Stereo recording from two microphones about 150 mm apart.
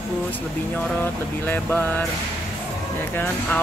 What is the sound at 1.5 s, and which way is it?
Speech, 10° left (ahead or behind).